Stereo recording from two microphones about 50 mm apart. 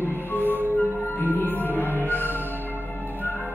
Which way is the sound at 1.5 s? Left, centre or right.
Left.